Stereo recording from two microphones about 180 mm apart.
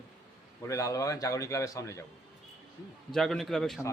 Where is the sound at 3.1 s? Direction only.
Centre (ahead or behind).